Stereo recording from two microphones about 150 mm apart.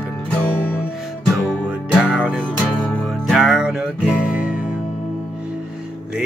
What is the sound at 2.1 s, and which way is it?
Music, centre (ahead or behind).